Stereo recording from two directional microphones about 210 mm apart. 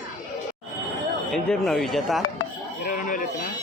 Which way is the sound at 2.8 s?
40° left (ahead or behind).